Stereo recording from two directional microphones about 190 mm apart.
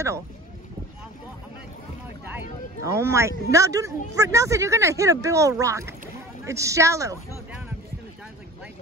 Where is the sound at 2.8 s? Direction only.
15° right (ahead or behind).